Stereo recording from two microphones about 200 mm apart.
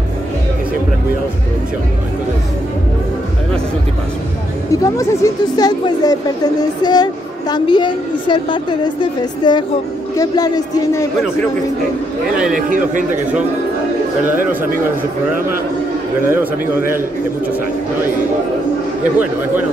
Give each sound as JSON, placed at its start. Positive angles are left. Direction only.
{"t": 4.8, "sound": "a woman's voice", "side_deg": 15}
{"t": 12.5, "sound": "a man's voice", "side_deg": -40}
{"t": 14.2, "sound": "a man's voice", "side_deg": -10}
{"t": 16.3, "sound": "a man's voice", "side_deg": -10}